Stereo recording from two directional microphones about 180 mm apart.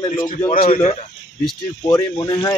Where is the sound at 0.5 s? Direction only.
45° left (ahead or behind).